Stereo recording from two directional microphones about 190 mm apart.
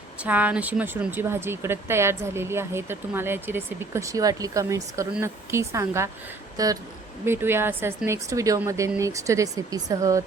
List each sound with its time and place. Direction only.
0.2 s speech: 10° right (ahead or behind)